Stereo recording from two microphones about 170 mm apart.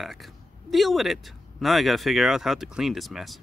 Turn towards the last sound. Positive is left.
turn(degrees=0)  # may be behind; listen again after turning